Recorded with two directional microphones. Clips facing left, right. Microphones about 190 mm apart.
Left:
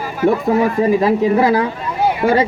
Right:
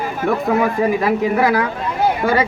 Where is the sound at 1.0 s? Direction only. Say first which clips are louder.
Left 3 dB; 30° left (ahead or behind).